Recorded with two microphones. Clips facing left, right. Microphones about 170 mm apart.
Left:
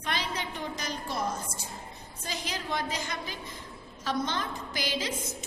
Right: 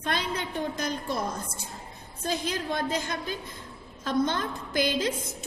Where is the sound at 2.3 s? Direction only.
55° right (ahead or behind).